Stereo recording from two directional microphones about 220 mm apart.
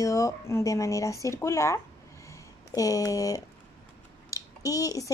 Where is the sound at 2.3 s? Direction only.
15° left (ahead or behind).